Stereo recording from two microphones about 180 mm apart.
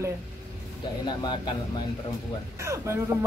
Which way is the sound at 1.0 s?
25° left (ahead or behind).